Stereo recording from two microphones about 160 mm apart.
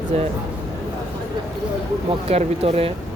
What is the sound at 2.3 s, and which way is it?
Speech, 40° right (ahead or behind).